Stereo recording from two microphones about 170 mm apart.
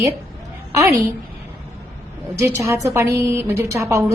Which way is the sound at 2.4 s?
20° right (ahead or behind).